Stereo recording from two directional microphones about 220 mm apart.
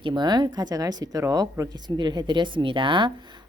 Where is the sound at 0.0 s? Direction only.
20° right (ahead or behind).